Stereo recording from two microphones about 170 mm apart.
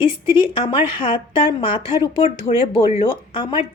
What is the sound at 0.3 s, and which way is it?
A woman's voice, 35° left (ahead or behind).